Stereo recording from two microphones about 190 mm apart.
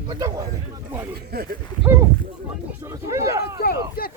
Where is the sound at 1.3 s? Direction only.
55° right (ahead or behind).